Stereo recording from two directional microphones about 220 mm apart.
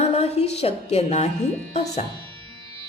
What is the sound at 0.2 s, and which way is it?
A woman's voice, 30° left (ahead or behind).